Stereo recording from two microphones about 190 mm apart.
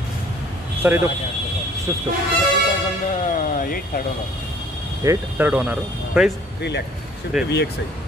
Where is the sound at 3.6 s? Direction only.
50° left (ahead or behind).